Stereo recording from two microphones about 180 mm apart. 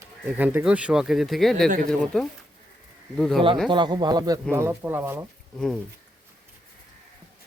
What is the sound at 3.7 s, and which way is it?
Speech, 25° right (ahead or behind).